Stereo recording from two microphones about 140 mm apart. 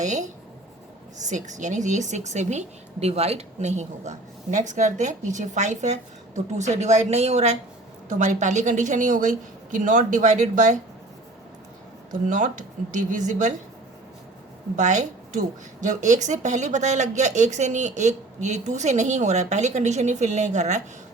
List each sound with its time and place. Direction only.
0.0 s a woman's voice: 60° right (ahead or behind)
1.3 s a woman's voice: 60° right (ahead or behind)
12.3 s a woman's voice: 65° right (ahead or behind)
14.8 s a woman's voice: 60° right (ahead or behind)